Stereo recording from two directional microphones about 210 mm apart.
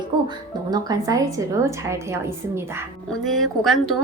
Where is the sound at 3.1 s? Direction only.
Centre (ahead or behind).